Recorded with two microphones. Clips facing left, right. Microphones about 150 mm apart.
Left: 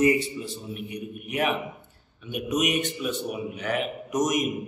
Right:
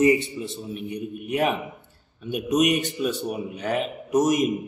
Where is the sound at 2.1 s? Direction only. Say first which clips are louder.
Right 5 dB; 40° right (ahead or behind).